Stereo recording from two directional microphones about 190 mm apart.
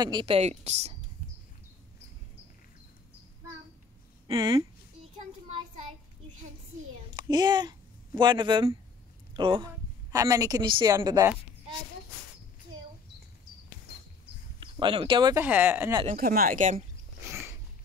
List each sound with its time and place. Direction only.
0.0 s a woman's voice: 25° right (ahead or behind)
4.3 s a woman's voice: 25° right (ahead or behind)
7.1 s a child's voice: 20° right (ahead or behind)
14.6 s speech: 25° right (ahead or behind)
15.4 s speech: 10° right (ahead or behind)
16.2 s speech: 50° right (ahead or behind)